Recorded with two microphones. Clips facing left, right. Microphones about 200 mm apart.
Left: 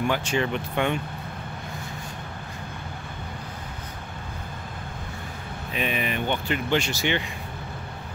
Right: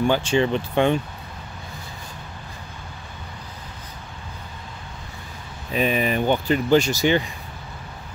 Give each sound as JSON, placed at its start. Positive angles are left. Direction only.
{"t": 0.0, "sound": "speech", "side_deg": -30}
{"t": 5.7, "sound": "speech", "side_deg": -40}